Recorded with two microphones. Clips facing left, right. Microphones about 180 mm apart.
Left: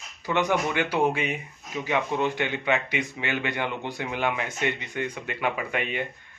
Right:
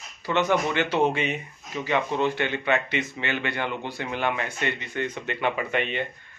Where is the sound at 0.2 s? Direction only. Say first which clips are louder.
Right 1 dB; 15° left (ahead or behind).